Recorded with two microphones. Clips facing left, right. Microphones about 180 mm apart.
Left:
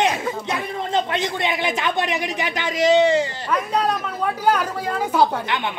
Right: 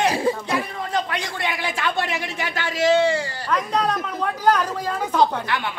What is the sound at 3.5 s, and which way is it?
Speech, 10° left (ahead or behind).